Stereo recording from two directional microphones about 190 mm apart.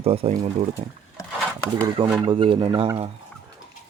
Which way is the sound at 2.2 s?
25° right (ahead or behind).